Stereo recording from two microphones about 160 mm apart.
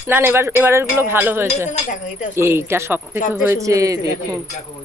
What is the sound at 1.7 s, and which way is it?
Speech, 50° left (ahead or behind).